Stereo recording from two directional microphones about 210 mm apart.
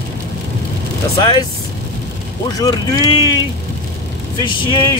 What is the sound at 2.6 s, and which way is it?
Speech, 15° left (ahead or behind).